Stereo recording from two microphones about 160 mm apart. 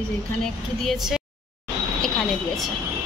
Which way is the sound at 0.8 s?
Centre (ahead or behind).